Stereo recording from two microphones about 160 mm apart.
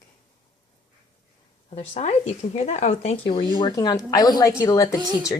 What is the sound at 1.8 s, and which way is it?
Speech, 50° left (ahead or behind).